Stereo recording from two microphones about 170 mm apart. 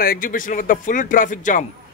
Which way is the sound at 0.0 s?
55° left (ahead or behind).